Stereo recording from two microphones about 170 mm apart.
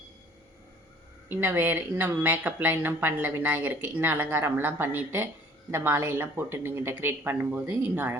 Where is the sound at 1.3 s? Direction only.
10° right (ahead or behind).